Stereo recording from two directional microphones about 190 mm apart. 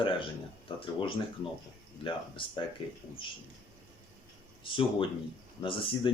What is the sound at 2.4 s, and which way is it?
Speech, 25° left (ahead or behind).